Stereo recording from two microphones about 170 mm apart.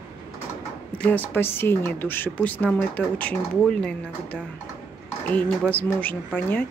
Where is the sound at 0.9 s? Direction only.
10° left (ahead or behind).